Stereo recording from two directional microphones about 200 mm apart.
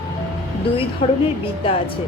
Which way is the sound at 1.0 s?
30° left (ahead or behind).